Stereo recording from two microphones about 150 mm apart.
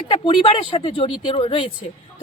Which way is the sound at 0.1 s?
35° left (ahead or behind).